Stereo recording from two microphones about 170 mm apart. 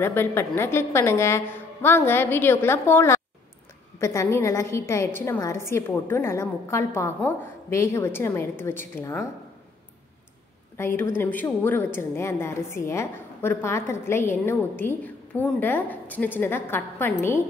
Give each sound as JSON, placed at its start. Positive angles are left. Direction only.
{"t": 0.0, "sound": "a woman's voice", "side_deg": 15}
{"t": 10.8, "sound": "a woman's voice", "side_deg": 15}